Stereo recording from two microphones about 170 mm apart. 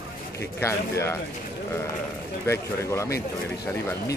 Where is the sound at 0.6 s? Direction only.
15° left (ahead or behind).